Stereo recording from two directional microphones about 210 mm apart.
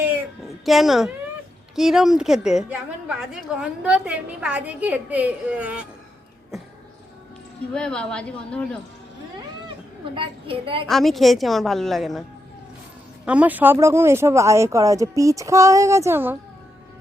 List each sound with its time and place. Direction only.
0.6 s a woman's voice: centre (ahead or behind)
7.7 s a woman's voice: 5° left (ahead or behind)
10.2 s a child's voice: 25° right (ahead or behind)
10.8 s a woman's voice: centre (ahead or behind)
13.2 s speech: 5° right (ahead or behind)